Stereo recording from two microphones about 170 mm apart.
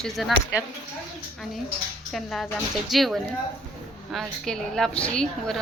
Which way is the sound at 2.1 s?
Centre (ahead or behind).